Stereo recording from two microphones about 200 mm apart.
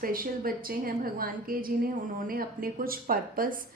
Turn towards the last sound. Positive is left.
turn(degrees=-45)  # may be behind; listen again after turning